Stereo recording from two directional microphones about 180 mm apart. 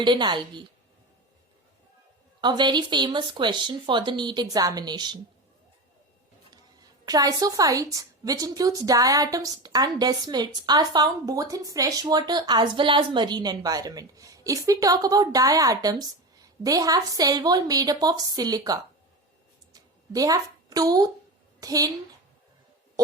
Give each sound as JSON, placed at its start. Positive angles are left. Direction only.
{"t": 0.0, "sound": "a woman's voice", "side_deg": -25}
{"t": 2.4, "sound": "a woman's voice", "side_deg": -25}
{"t": 7.0, "sound": "a woman's voice", "side_deg": -20}
{"t": 19.7, "sound": "a sound", "side_deg": -20}
{"t": 21.6, "sound": "a woman's voice", "side_deg": -20}